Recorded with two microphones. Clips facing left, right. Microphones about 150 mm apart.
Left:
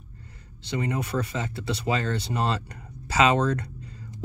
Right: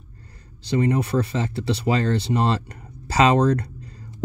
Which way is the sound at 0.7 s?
35° right (ahead or behind).